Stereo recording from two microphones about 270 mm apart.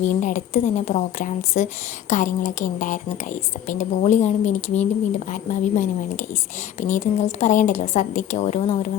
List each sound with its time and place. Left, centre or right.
0.0 s speech: left